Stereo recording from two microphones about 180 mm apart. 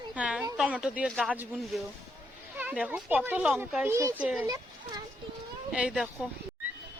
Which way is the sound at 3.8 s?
15° right (ahead or behind).